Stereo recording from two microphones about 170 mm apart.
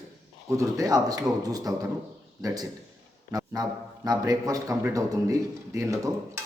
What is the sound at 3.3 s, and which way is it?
A man's voice, 20° right (ahead or behind).